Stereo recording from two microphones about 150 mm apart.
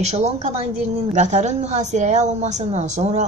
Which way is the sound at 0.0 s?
45° right (ahead or behind).